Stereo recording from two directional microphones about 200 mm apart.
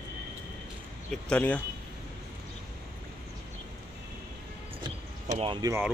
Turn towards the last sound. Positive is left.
turn(degrees=-20)  # may be behind; listen again after turning